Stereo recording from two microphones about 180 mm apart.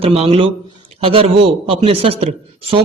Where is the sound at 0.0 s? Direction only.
35° right (ahead or behind).